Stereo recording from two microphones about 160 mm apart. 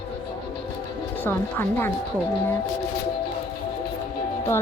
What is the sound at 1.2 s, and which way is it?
Speech, 15° left (ahead or behind).